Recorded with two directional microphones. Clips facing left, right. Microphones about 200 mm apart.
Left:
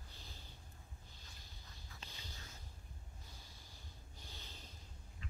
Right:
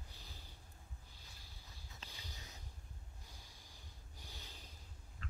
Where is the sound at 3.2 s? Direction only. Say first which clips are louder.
Left 1 dB; 15° right (ahead or behind).